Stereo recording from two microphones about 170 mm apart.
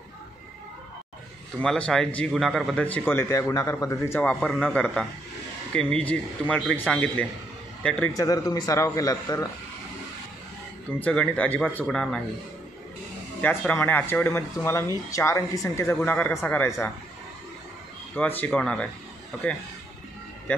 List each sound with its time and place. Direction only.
1.6 s a man's voice: 5° left (ahead or behind)
8.1 s a man's voice: 20° left (ahead or behind)
11.0 s a man's voice: 10° left (ahead or behind)
13.4 s a man's voice: 10° left (ahead or behind)
18.1 s a man's voice: 10° left (ahead or behind)